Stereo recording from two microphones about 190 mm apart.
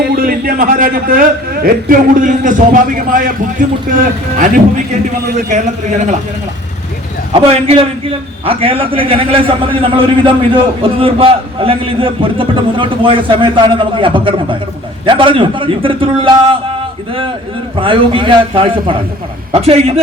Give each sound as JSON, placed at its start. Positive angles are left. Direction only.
{"t": 0.0, "sound": "a man's voice", "side_deg": -50}
{"t": 7.3, "sound": "a man's voice", "side_deg": -30}
{"t": 17.7, "sound": "a man's voice", "side_deg": -25}